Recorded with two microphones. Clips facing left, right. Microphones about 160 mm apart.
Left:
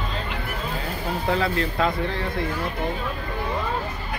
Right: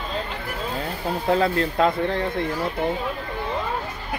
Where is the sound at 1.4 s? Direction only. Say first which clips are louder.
Right 3 dB; 40° right (ahead or behind).